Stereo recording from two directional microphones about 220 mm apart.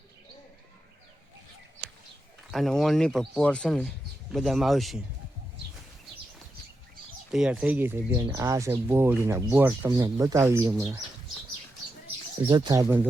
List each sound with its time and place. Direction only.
2.5 s speech: centre (ahead or behind)
7.3 s speech: centre (ahead or behind)
12.5 s speech: 20° right (ahead or behind)